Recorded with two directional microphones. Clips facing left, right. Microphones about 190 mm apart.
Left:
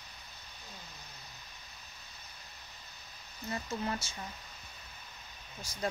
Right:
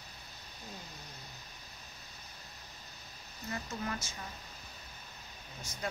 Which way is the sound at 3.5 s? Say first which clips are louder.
Left 3 dB; 30° left (ahead or behind).